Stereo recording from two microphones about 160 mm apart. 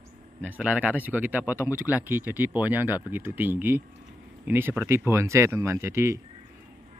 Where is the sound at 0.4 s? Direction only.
10° right (ahead or behind).